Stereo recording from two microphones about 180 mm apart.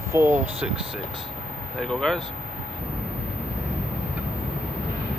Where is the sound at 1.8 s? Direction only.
5° left (ahead or behind).